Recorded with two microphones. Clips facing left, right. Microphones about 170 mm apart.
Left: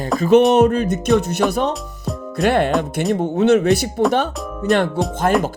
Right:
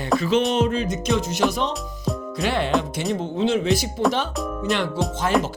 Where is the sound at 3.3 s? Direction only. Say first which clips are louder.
Left 7 dB; 70° left (ahead or behind).